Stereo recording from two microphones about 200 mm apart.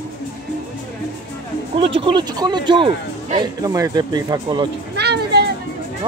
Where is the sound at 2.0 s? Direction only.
25° right (ahead or behind).